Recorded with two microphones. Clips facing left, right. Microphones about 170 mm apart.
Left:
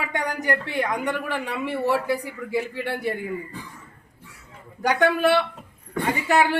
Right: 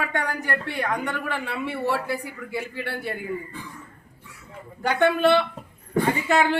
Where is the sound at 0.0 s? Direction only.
15° left (ahead or behind).